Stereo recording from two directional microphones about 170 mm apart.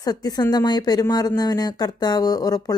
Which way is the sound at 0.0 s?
25° left (ahead or behind).